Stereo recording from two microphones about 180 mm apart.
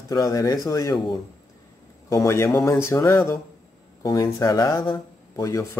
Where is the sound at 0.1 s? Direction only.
20° left (ahead or behind).